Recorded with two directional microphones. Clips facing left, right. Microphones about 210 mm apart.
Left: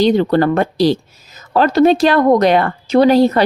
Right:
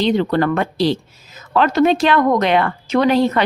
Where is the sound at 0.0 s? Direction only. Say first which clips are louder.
Left 4 dB; 40° left (ahead or behind).